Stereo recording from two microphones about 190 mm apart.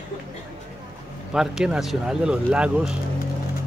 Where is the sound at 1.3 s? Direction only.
Centre (ahead or behind).